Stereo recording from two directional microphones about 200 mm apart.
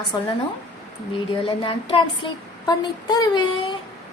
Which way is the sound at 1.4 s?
25° left (ahead or behind).